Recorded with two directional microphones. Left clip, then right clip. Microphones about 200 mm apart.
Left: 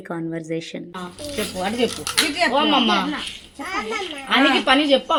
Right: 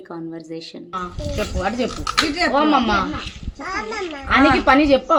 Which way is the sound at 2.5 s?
15° right (ahead or behind).